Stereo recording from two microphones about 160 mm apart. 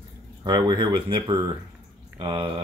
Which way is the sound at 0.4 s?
30° right (ahead or behind).